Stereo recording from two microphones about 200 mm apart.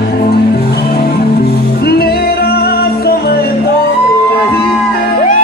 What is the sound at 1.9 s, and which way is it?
Music, 50° left (ahead or behind).